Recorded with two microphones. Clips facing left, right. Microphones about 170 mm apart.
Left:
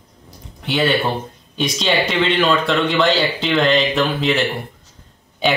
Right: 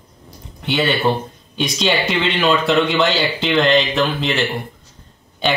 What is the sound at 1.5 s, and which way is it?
Speech, centre (ahead or behind).